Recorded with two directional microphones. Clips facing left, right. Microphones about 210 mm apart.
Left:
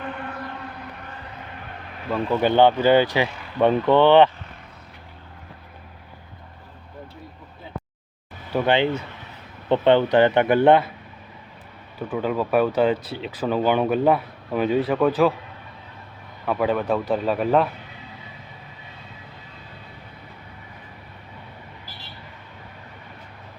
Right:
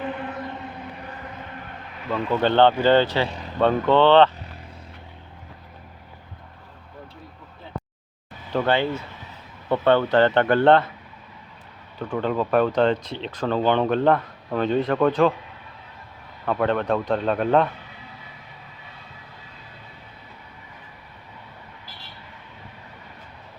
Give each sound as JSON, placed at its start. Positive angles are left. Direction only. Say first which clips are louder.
{"t": 0.0, "sound": "a sound", "louder": "right 3 dB", "side_deg": -5}
{"t": 2.0, "sound": "speech", "louder": "left 1 dB", "side_deg": 10}
{"t": 3.2, "sound": "speech", "louder": "right 3 dB", "side_deg": -35}
{"t": 3.6, "sound": "speech", "louder": "left 1 dB", "side_deg": 15}
{"t": 8.5, "sound": "speech", "louder": "left 2 dB", "side_deg": 15}
{"t": 11.9, "sound": "speech", "louder": "even", "side_deg": 5}
{"t": 16.5, "sound": "speech", "louder": "even", "side_deg": 5}